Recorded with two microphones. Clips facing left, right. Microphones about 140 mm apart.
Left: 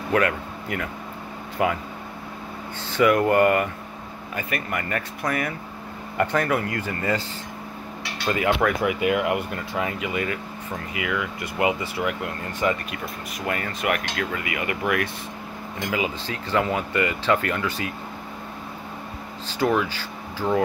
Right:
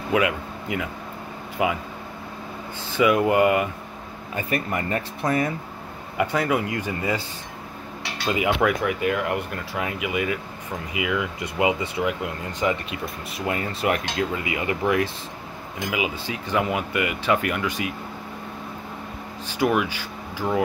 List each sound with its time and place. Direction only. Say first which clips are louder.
0.1 s speech: even; 10° right (ahead or behind)
2.9 s speech: left 1 dB; 15° right (ahead or behind)
4.4 s speech: right 3 dB; 30° right (ahead or behind)
6.1 s speech: even; 10° right (ahead or behind)
8.3 s speech: even; 15° right (ahead or behind)
8.8 s speech: left 2 dB; 5° left (ahead or behind)
9.8 s speech: even; 5° right (ahead or behind); by 14.8 s 25° right (ahead or behind)
15.8 s speech: even; 10° right (ahead or behind)
19.4 s speech: even; 10° right (ahead or behind)